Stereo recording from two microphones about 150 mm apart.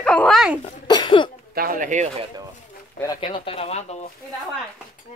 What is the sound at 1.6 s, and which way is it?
Speech, 65° right (ahead or behind).